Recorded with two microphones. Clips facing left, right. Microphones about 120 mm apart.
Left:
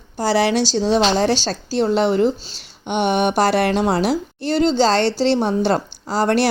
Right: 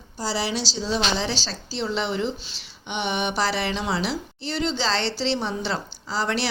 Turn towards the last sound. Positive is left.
turn(degrees=50)  # may be behind; listen again after turning